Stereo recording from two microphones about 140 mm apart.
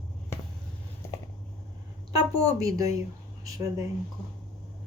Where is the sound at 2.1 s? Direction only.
25° right (ahead or behind).